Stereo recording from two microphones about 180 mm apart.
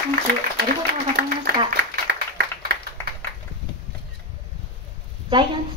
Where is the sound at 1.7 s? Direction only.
65° right (ahead or behind).